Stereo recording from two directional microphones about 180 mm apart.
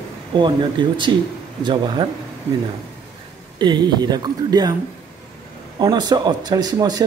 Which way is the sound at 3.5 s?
25° right (ahead or behind).